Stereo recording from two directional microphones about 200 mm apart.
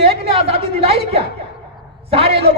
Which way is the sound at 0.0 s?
30° right (ahead or behind).